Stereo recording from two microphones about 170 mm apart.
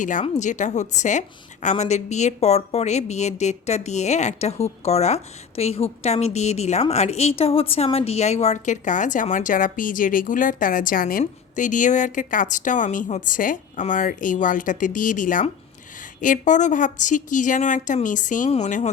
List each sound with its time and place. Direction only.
0.0 s a woman's voice: 50° left (ahead or behind)